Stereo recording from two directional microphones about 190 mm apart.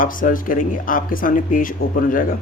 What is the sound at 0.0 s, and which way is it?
Speech, 45° left (ahead or behind).